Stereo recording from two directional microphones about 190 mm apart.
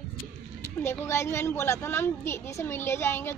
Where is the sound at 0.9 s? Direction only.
15° left (ahead or behind).